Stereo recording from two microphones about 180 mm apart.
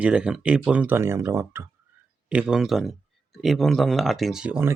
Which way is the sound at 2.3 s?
5° right (ahead or behind).